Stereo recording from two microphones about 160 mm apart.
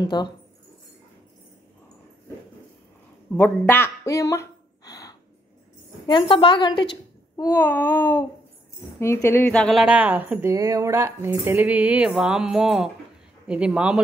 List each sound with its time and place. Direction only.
0.0 s speech: 25° left (ahead or behind)
3.3 s a woman's voice: 10° left (ahead or behind); by 7.4 s 30° left (ahead or behind)
7.4 s a sound: 15° left (ahead or behind)
9.6 s speech: centre (ahead or behind)
9.8 s speech: 10° right (ahead or behind)